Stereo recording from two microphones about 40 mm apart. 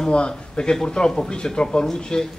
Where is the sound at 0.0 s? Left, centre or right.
Left.